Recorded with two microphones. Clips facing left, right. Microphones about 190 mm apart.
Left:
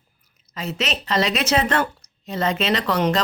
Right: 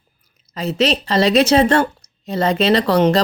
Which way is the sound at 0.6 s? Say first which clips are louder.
Right 9 dB; 35° right (ahead or behind).